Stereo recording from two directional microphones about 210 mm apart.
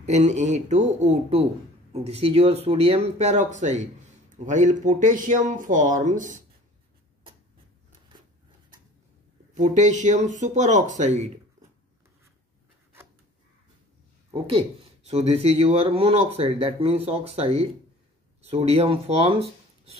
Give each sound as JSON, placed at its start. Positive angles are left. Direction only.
{"t": 0.0, "sound": "speech", "side_deg": -35}
{"t": 9.5, "sound": "speech", "side_deg": -35}
{"t": 14.3, "sound": "speech", "side_deg": -25}